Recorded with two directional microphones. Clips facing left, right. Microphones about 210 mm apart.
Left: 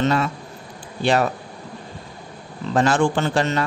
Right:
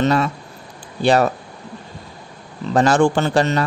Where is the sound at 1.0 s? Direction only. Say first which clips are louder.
Right 4 dB; 40° right (ahead or behind).